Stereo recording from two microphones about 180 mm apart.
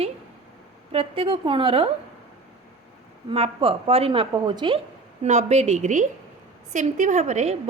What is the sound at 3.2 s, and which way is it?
A woman's voice, 30° right (ahead or behind).